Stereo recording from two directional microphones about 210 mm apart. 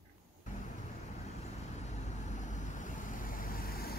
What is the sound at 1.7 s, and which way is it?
Vehicle, 35° left (ahead or behind).